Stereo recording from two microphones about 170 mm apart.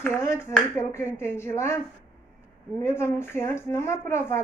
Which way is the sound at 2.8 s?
15° left (ahead or behind).